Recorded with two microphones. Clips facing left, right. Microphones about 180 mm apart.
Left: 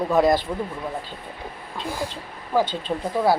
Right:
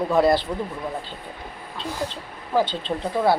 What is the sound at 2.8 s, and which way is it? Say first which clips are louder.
Speech: even; 10° left (ahead or behind).